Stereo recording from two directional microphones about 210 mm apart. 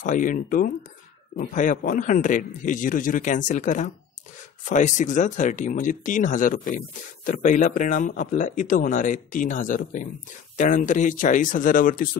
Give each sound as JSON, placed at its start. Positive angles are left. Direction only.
{"t": 0.0, "sound": "speech", "side_deg": 35}